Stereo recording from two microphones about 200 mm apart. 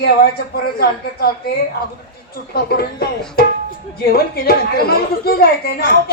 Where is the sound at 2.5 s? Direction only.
50° left (ahead or behind).